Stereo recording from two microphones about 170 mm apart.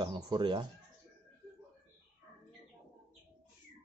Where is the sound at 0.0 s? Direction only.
30° right (ahead or behind).